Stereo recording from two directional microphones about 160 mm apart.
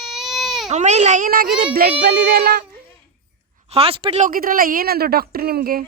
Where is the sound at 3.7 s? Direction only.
35° right (ahead or behind).